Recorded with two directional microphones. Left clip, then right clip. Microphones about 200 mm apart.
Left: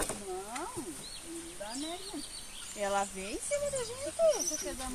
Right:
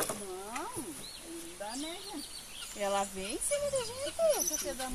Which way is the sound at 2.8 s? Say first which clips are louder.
Even; 55° right (ahead or behind).